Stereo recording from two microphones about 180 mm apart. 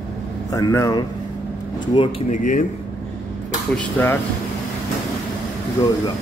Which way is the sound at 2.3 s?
45° left (ahead or behind).